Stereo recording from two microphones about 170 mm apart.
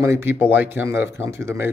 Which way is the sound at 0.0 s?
15° right (ahead or behind).